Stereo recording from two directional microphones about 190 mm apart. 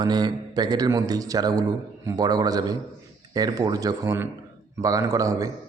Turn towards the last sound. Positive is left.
turn(degrees=-15)  # may be behind; listen again after turning